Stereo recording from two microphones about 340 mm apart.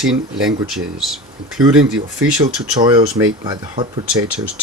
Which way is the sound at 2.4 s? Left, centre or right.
Centre.